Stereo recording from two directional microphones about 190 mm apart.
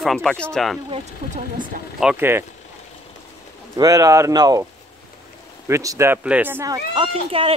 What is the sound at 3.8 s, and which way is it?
Speech, 20° right (ahead or behind).